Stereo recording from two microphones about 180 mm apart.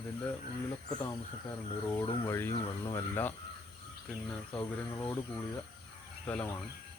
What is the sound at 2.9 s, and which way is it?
Speech, 10° left (ahead or behind).